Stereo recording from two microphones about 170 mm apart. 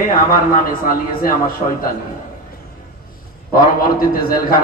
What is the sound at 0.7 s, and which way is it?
Speech, 55° left (ahead or behind).